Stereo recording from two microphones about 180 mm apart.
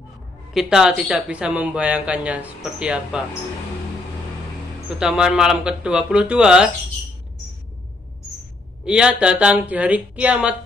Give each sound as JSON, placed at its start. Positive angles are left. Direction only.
{"t": 0.5, "sound": "speech", "side_deg": -5}
{"t": 4.9, "sound": "speech", "side_deg": -5}
{"t": 8.8, "sound": "speech", "side_deg": -5}